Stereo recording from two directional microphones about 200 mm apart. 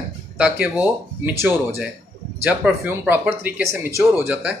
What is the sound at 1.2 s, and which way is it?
Speech, 10° right (ahead or behind).